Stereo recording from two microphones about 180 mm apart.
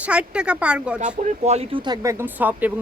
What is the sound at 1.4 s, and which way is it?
Speech, 35° right (ahead or behind).